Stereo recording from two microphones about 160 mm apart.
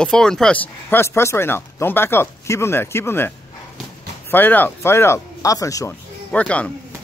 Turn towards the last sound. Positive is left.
turn(degrees=10)  # may be behind; listen again after turning